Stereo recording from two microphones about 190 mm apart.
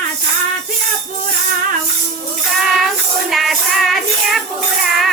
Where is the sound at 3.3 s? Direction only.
Centre (ahead or behind).